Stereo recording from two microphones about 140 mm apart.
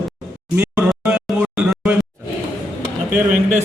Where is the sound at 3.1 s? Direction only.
15° right (ahead or behind).